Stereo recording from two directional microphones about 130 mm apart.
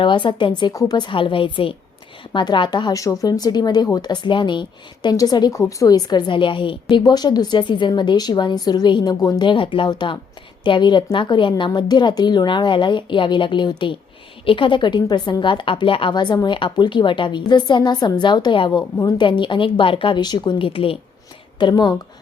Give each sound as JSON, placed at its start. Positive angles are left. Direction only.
{"t": 0.0, "sound": "a woman's voice", "side_deg": 40}
{"t": 21.6, "sound": "a woman's voice", "side_deg": 35}